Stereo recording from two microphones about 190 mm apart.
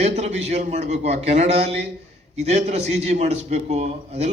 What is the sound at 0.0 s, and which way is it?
A man's voice, 35° right (ahead or behind).